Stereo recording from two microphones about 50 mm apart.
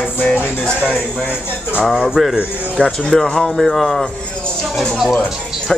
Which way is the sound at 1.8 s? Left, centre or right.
Centre.